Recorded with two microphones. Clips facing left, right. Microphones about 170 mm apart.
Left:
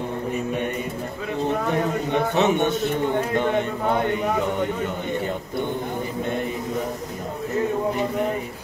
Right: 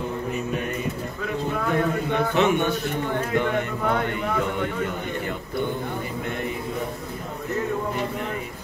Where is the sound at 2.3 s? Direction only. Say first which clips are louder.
Left 1 dB; 20° left (ahead or behind).